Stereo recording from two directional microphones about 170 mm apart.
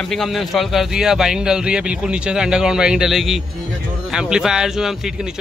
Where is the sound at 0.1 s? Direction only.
Centre (ahead or behind).